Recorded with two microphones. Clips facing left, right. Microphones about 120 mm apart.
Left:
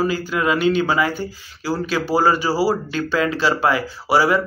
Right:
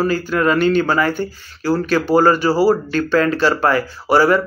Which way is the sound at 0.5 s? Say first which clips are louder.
Right 2 dB; 50° right (ahead or behind).